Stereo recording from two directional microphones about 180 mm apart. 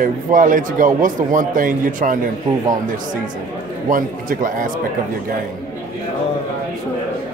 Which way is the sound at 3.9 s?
50° right (ahead or behind).